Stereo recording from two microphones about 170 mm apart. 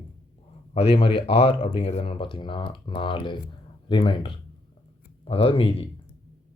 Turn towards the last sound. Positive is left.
turn(degrees=30)  # may be behind; listen again after turning